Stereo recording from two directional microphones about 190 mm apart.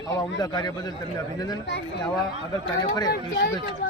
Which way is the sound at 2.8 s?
20° left (ahead or behind).